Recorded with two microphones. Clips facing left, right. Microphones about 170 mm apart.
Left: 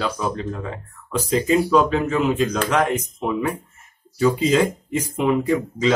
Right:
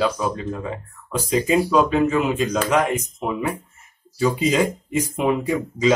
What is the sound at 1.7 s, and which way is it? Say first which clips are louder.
Speech: even; 10° right (ahead or behind).